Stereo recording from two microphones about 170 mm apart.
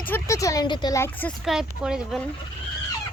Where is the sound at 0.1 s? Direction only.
20° left (ahead or behind).